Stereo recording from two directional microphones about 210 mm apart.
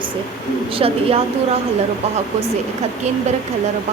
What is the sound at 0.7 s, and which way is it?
Speech, 25° right (ahead or behind).